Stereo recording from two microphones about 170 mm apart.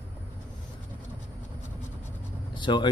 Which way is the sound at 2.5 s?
25° left (ahead or behind).